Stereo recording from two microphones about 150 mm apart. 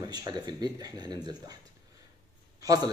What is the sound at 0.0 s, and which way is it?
Speech, 25° right (ahead or behind).